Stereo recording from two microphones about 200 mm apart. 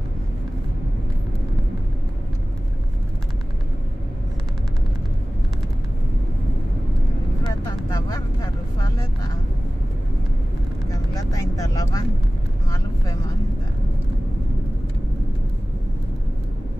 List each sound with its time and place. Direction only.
7.4 s vehicle: 20° left (ahead or behind)
10.9 s vehicle: 15° left (ahead or behind)